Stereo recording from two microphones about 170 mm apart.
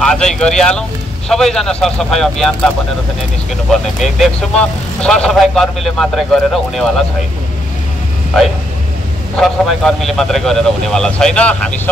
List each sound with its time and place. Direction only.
0.0 s speech: 5° left (ahead or behind)
4.0 s speech: 5° left (ahead or behind)
9.4 s speech: centre (ahead or behind)